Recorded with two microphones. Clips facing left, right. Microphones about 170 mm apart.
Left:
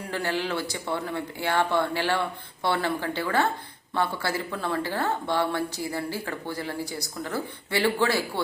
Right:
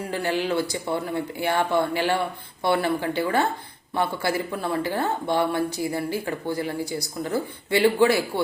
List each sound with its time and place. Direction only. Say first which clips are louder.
0.1 s speech: right 3 dB; 15° right (ahead or behind)